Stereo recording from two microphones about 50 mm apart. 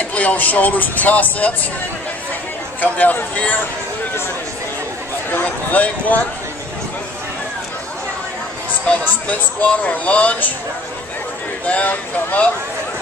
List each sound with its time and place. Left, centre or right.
0.0 s speech: left
2.8 s speech: left
5.4 s speech: left
8.8 s speech: left
11.6 s speech: left